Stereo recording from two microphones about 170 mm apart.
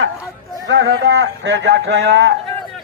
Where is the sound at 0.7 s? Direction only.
90° right.